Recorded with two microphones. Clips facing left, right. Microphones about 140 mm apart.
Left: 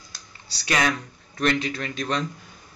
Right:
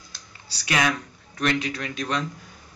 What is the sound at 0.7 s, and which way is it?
Speech, 10° right (ahead or behind).